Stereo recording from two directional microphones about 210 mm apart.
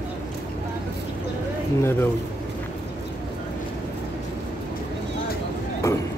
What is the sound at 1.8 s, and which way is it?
Speech, 10° left (ahead or behind).